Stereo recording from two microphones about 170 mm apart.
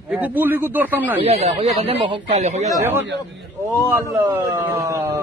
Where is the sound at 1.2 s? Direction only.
35° right (ahead or behind).